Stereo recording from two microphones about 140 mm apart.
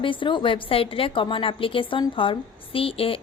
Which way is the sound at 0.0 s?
35° left (ahead or behind).